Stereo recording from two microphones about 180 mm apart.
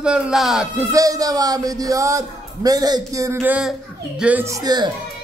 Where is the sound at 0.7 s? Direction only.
20° right (ahead or behind).